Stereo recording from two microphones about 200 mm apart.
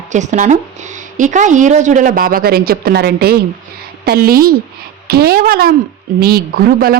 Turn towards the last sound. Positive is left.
turn(degrees=-50)  # may be behind; listen again after turning